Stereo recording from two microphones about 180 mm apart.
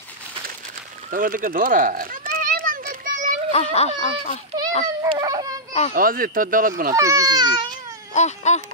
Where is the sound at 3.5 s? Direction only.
35° left (ahead or behind).